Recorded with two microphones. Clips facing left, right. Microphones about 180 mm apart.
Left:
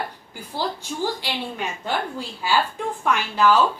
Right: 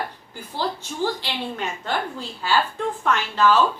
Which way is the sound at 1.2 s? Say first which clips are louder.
Even; 10° left (ahead or behind).